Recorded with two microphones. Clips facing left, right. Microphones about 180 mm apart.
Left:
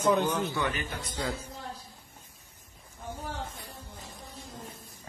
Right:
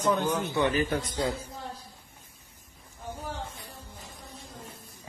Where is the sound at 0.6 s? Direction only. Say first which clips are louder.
Right 7 dB; 25° right (ahead or behind).